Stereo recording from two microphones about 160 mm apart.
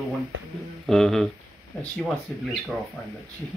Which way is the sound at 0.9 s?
Centre (ahead or behind).